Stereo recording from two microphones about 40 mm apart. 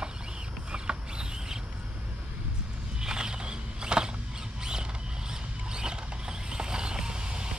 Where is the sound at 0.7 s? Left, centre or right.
Right.